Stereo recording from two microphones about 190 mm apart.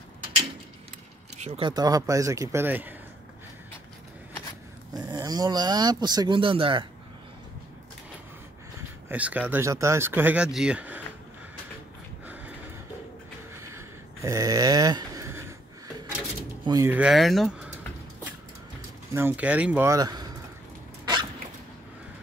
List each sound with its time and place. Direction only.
1.4 s speech: 30° right (ahead or behind); by 2.9 s 10° right (ahead or behind)
4.9 s speech: 20° right (ahead or behind)
9.1 s speech: 10° right (ahead or behind)
13.6 s a sound: 15° right (ahead or behind)
16.6 s speech: 15° right (ahead or behind); by 17.6 s centre (ahead or behind)
19.1 s speech: 10° right (ahead or behind)
21.0 s dog: 25° right (ahead or behind)